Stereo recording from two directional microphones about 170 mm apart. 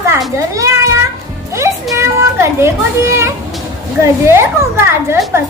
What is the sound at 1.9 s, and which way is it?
A child's voice, 15° right (ahead or behind).